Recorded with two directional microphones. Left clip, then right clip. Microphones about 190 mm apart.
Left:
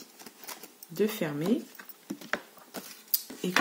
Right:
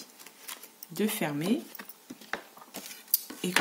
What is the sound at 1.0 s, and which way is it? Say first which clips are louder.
Speech: left 1 dB; 45° right (ahead or behind).